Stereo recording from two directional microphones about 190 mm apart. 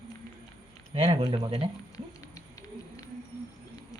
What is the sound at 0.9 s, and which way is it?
Speech, 30° right (ahead or behind).